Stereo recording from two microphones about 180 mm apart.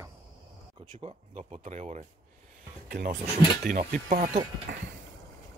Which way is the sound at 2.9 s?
50° right (ahead or behind).